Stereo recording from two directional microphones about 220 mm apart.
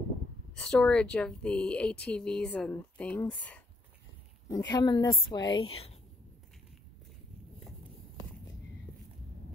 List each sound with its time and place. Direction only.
0.6 s speech: 5° left (ahead or behind)
4.5 s a woman's voice: 15° left (ahead or behind)